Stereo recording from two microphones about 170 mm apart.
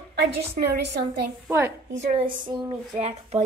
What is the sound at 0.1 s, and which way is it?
A woman's voice, 75° right (ahead or behind).